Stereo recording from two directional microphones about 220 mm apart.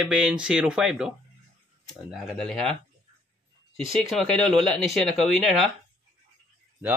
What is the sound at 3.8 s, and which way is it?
Speech, centre (ahead or behind).